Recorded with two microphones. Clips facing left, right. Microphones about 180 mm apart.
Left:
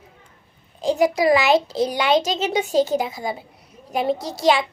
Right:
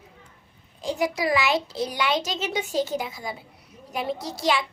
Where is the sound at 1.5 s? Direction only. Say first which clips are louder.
Left 7 dB; 90° left.